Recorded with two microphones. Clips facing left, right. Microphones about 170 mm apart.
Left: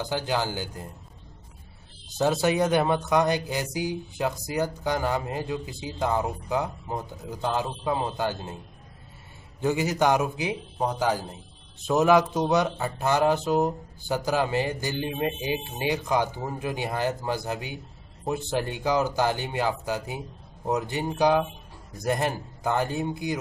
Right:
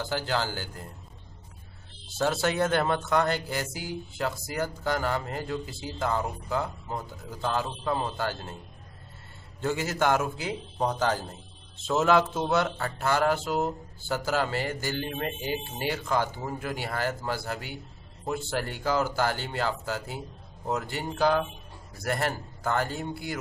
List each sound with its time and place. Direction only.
0.0 s speech: 15° left (ahead or behind)
2.1 s speech: 15° left (ahead or behind)
9.6 s speech: 15° left (ahead or behind)